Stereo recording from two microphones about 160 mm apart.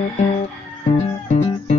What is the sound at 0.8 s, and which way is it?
Music, 50° left (ahead or behind).